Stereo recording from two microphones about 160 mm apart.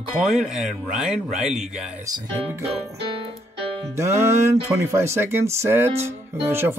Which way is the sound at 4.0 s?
15° right (ahead or behind).